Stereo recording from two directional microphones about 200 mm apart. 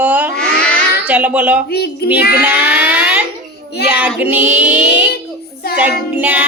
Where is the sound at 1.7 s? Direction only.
50° left (ahead or behind).